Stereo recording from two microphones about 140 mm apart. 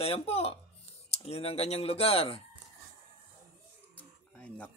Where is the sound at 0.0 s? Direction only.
45° left (ahead or behind).